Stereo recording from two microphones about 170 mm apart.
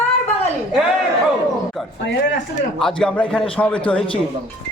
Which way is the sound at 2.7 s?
5° left (ahead or behind).